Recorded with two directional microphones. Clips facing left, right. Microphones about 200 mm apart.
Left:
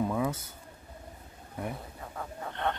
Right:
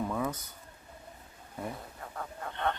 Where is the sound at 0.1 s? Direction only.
10° left (ahead or behind).